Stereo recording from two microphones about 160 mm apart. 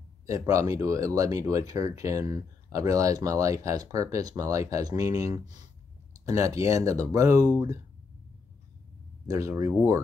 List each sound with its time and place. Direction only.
0.3 s speech: 20° right (ahead or behind)
9.3 s speech: 20° right (ahead or behind)